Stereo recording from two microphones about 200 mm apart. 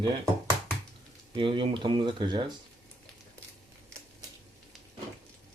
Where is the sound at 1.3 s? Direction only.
25° right (ahead or behind).